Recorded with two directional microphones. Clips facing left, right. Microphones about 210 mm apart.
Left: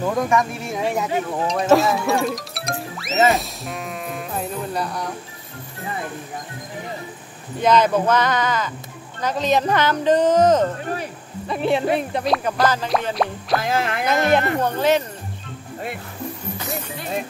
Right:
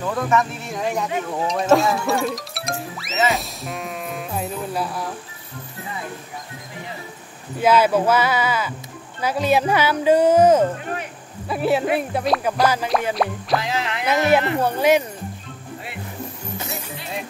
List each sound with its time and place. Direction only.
0.0 s speech: 15° left (ahead or behind)
0.7 s speech: 5° left (ahead or behind)
7.6 s speech: 5° right (ahead or behind)
13.6 s speech: 50° left (ahead or behind)
14.0 s speech: 5° right (ahead or behind)